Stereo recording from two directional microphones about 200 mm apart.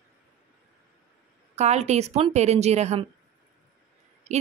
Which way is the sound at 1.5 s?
35° right (ahead or behind).